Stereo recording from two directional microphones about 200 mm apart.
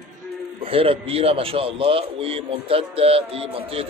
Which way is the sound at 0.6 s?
25° right (ahead or behind).